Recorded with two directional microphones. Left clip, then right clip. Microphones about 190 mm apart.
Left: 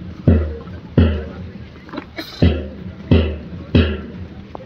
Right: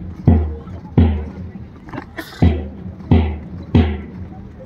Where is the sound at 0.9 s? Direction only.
50° right (ahead or behind).